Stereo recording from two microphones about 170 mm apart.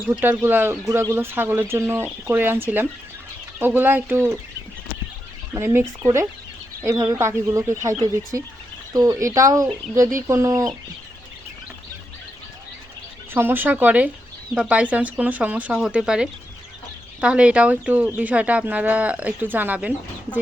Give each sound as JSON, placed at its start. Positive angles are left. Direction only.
{"t": 0.1, "sound": "speech", "side_deg": -10}
{"t": 5.5, "sound": "speech", "side_deg": -15}
{"t": 13.3, "sound": "speech", "side_deg": -10}